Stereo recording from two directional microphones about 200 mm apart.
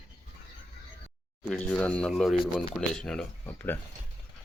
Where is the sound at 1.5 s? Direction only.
5° left (ahead or behind).